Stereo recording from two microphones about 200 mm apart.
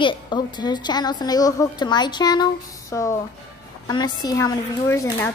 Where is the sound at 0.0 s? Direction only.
25° left (ahead or behind).